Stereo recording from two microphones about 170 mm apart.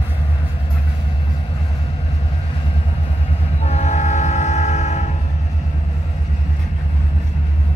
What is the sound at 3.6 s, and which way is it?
Train, 40° left (ahead or behind).